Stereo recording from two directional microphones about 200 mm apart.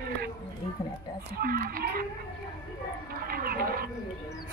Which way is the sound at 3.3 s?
45° right (ahead or behind).